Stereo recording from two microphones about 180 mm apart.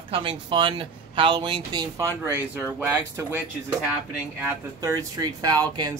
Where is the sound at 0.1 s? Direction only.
30° right (ahead or behind); by 3.4 s 10° right (ahead or behind).